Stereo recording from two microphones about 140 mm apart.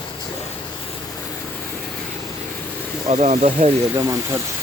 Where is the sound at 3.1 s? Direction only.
50° right (ahead or behind).